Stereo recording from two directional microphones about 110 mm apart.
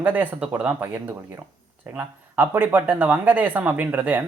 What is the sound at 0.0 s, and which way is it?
Speech, 15° right (ahead or behind).